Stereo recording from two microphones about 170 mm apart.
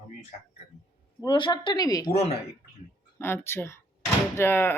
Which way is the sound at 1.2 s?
25° left (ahead or behind).